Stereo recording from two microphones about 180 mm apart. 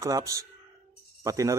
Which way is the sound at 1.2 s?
15° right (ahead or behind).